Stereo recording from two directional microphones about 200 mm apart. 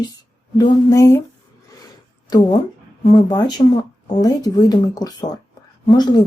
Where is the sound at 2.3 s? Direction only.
20° left (ahead or behind).